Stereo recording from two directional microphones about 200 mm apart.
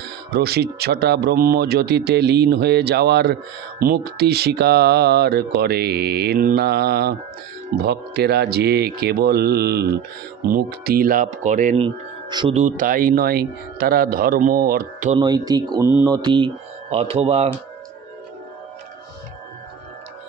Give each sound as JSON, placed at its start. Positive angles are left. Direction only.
{"t": 0.3, "sound": "speech", "side_deg": -50}
{"t": 12.5, "sound": "speech", "side_deg": -40}
{"t": 15.1, "sound": "speech", "side_deg": -20}
{"t": 16.2, "sound": "speech", "side_deg": -25}